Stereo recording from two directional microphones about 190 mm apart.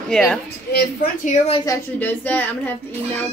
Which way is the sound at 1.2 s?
35° left (ahead or behind).